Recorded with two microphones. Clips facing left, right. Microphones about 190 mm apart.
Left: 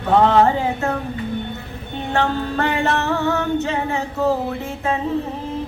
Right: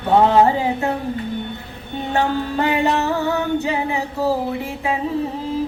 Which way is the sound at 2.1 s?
10° right (ahead or behind).